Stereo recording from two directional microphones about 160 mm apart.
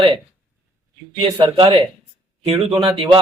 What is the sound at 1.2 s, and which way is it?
A man's voice, 35° right (ahead or behind).